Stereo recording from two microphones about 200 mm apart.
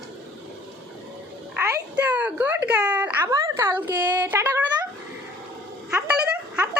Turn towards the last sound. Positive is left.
turn(degrees=-5)  # may be behind; listen again after turning